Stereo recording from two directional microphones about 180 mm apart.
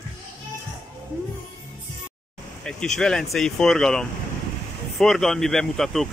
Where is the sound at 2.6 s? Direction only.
5° left (ahead or behind).